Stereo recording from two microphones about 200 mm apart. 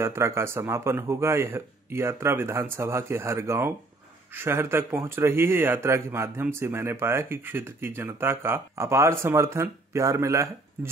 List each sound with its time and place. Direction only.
0.0 s speech: 15° right (ahead or behind)